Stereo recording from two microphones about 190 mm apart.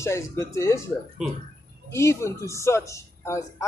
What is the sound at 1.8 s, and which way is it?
A man's voice, 15° left (ahead or behind).